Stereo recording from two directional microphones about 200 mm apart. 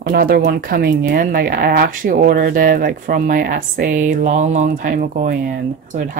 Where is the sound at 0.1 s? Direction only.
45° right (ahead or behind).